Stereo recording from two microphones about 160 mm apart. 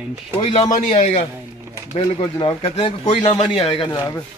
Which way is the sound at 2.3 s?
35° left (ahead or behind).